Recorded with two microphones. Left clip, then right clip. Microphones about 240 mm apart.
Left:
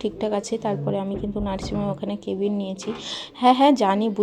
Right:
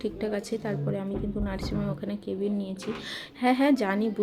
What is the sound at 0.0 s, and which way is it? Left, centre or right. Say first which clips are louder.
A woman's voice: left 6 dB; centre.